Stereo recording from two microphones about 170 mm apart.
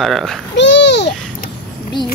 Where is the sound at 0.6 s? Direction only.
90° left.